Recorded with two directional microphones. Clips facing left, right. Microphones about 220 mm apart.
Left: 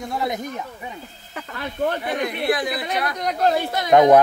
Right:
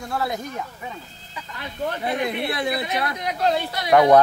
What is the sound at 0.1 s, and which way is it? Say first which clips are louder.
Speech: even; 20° left (ahead or behind).